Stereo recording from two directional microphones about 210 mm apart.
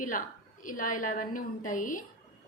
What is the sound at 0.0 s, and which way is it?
A woman's voice, 40° left (ahead or behind).